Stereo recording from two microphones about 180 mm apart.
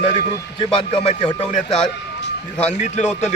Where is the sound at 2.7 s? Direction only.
40° left (ahead or behind).